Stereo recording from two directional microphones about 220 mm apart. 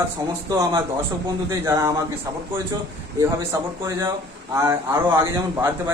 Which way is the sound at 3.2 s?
15° right (ahead or behind).